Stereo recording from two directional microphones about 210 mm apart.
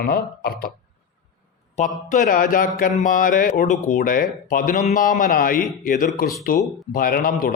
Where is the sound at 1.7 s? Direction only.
35° left (ahead or behind).